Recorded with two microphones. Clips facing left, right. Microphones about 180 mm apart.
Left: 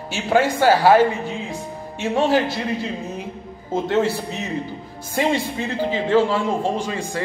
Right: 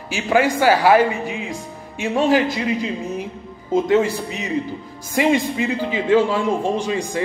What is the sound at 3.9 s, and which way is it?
Speech, 10° right (ahead or behind).